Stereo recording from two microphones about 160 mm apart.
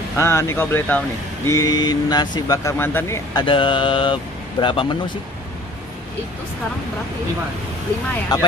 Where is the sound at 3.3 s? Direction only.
30° left (ahead or behind).